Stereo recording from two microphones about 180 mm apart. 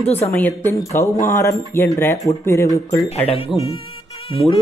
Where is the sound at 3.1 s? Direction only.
30° left (ahead or behind).